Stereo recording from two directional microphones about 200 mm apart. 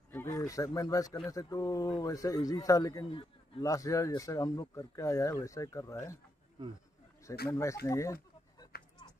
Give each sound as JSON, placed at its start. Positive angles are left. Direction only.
{"t": 0.1, "sound": "speech", "side_deg": 10}
{"t": 7.4, "sound": "speech", "side_deg": 15}